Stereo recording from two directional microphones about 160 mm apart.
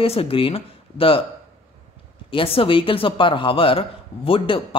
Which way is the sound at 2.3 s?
35° left (ahead or behind).